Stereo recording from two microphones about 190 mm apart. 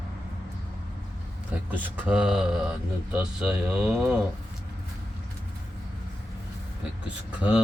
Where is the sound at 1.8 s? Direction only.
5° right (ahead or behind).